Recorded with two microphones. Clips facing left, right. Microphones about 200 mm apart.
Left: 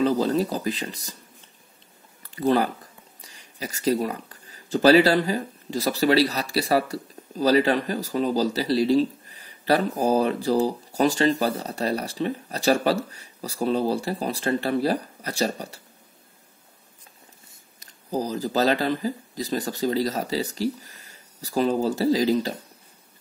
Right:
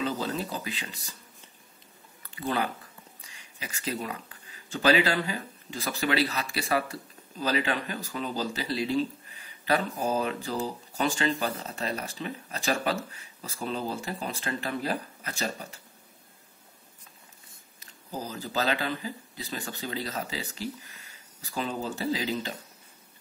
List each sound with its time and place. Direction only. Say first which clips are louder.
0.0 s speech: left 9 dB; 40° left (ahead or behind)
2.2 s speech: left 8 dB; 40° left (ahead or behind)
18.1 s speech: left 8 dB; 40° left (ahead or behind)